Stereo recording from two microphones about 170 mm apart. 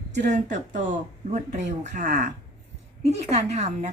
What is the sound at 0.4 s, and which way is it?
Speech, 50° right (ahead or behind).